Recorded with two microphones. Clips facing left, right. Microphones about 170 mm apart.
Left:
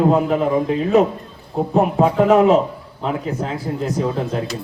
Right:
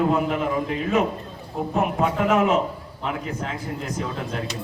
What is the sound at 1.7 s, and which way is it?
A man's voice, 35° left (ahead or behind).